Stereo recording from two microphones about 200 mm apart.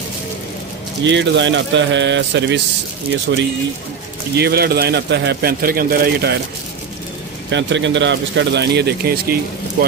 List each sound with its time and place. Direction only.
1.0 s speech: 65° right (ahead or behind)
4.4 s speech: 50° right (ahead or behind)
7.5 s speech: 65° right (ahead or behind)